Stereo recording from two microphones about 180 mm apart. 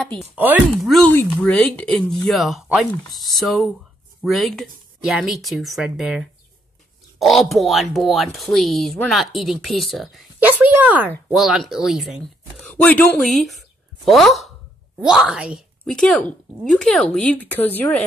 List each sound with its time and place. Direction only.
0.8 s a woman's voice: centre (ahead or behind)
15.8 s speech: 5° left (ahead or behind)